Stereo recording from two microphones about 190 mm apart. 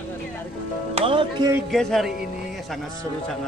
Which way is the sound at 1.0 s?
25° right (ahead or behind).